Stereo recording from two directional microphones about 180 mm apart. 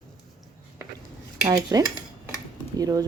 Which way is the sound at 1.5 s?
20° right (ahead or behind).